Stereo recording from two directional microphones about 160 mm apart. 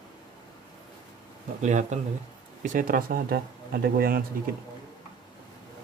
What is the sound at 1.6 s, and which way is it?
Speech, 50° right (ahead or behind).